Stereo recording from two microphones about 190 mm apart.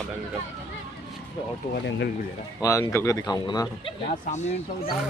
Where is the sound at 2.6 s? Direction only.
15° left (ahead or behind).